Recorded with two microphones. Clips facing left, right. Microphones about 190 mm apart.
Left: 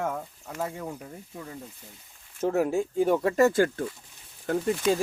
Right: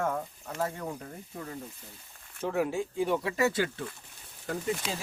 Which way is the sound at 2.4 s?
45° left (ahead or behind).